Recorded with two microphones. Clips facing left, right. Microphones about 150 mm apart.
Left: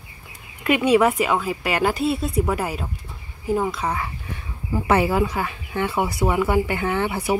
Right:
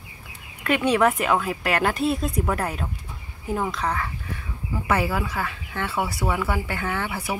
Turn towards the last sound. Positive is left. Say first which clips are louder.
# left 5 dB
turn(degrees=25)  # may be behind; listen again after turning